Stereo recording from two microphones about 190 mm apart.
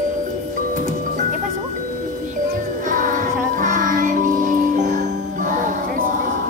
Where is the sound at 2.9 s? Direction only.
45° right (ahead or behind).